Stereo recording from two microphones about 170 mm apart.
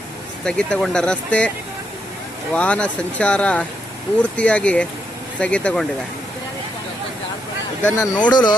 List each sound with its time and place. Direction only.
0.5 s speech: 5° left (ahead or behind)
2.5 s speech: 5° left (ahead or behind)
8.0 s speech: 20° left (ahead or behind)